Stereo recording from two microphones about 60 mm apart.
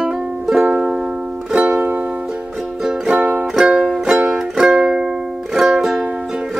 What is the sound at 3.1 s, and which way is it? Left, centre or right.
Music, right.